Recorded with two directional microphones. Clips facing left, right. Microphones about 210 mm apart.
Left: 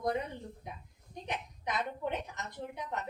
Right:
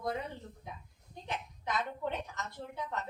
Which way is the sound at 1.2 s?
20° left (ahead or behind).